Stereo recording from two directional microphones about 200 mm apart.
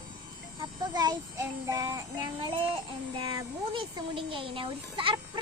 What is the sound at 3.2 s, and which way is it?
Speech, 25° right (ahead or behind).